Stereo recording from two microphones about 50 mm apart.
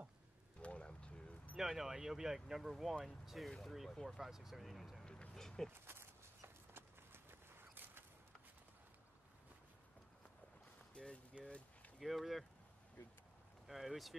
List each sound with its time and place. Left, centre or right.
0.6 s a sound: left
1.6 s speech: centre
5.0 s vehicle: centre
5.7 s walk: right
11.0 s a sound: left
11.3 s speech: right
12.0 s speech: centre
13.7 s speech: centre